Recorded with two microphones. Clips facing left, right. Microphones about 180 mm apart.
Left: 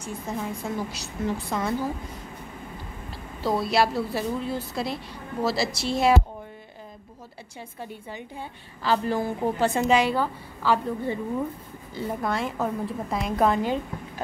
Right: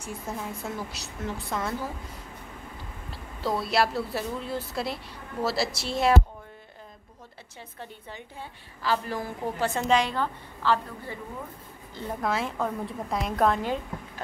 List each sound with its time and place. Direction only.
0.0 s a woman's voice: 5° right (ahead or behind)
3.1 s a sound: centre (ahead or behind)
3.6 s a woman's voice: centre (ahead or behind)
7.8 s a woman's voice: 10° left (ahead or behind)
8.8 s a woman's voice: 25° left (ahead or behind)
9.8 s a woman's voice: 10° left (ahead or behind)
11.9 s a woman's voice: 5° left (ahead or behind)